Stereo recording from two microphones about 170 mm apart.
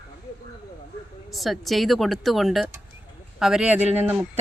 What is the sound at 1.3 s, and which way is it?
Speech, centre (ahead or behind).